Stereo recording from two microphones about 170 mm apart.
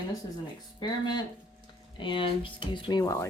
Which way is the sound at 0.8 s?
25° left (ahead or behind).